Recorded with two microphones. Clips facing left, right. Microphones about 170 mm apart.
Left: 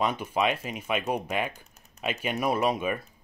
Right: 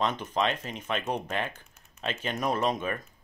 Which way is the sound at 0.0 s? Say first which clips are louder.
Left 2 dB; 10° left (ahead or behind).